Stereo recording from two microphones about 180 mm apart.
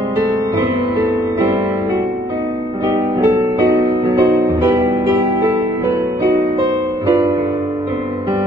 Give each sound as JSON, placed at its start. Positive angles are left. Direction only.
{"t": 2.9, "sound": "music", "side_deg": -15}